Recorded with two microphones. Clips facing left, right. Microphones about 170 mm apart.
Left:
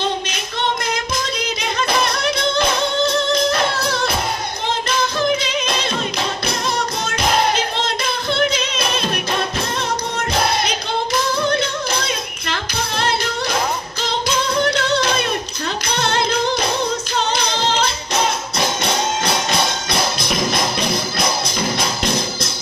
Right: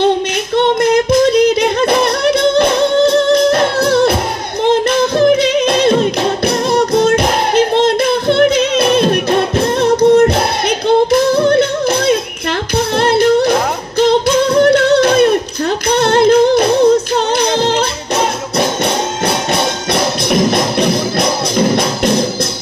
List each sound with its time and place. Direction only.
0.7 s yodeling: 65° right (ahead or behind)
4.8 s music: 60° right (ahead or behind)